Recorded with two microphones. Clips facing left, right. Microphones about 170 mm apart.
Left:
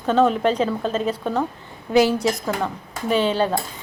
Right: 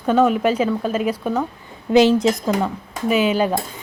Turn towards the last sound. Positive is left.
turn(degrees=-10)  # may be behind; listen again after turning